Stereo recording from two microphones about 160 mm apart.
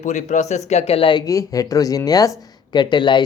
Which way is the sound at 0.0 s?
50° left (ahead or behind).